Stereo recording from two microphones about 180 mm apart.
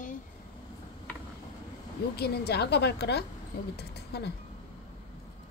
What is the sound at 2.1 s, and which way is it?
A woman's voice, 65° left (ahead or behind).